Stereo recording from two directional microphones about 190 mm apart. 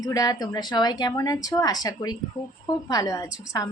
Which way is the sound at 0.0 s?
20° left (ahead or behind).